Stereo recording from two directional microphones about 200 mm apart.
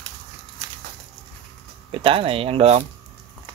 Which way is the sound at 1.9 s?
25° right (ahead or behind).